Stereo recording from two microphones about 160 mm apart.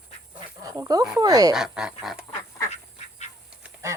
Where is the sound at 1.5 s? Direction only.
5° right (ahead or behind).